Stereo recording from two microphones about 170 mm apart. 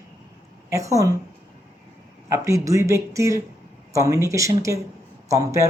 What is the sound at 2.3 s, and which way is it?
Speech, 20° right (ahead or behind).